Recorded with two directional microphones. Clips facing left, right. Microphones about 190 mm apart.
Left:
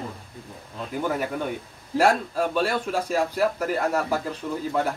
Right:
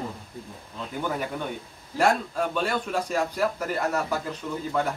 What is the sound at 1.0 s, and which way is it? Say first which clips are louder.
A man's voice: left 3 dB; 5° left (ahead or behind).